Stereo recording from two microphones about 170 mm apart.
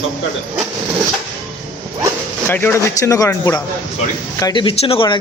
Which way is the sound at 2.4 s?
10° left (ahead or behind).